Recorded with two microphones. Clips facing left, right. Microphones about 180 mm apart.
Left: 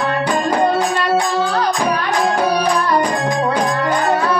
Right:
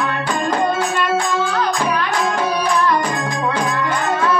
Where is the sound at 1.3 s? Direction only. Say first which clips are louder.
Left 2 dB; 35° left (ahead or behind).